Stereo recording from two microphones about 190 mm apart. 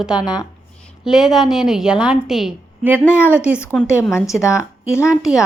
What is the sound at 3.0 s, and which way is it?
Speech, 10° left (ahead or behind).